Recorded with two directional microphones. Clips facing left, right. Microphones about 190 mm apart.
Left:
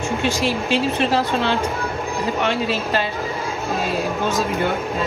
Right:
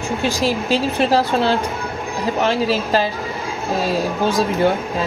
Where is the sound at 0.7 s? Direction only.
35° right (ahead or behind).